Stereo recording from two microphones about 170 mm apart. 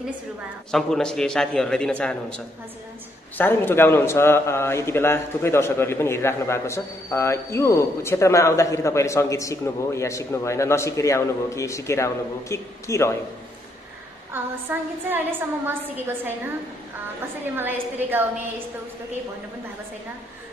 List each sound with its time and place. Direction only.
0.7 s a man's voice: 5° left (ahead or behind)
14.3 s a woman's voice: 10° right (ahead or behind)
17.6 s a woman's voice: 10° right (ahead or behind)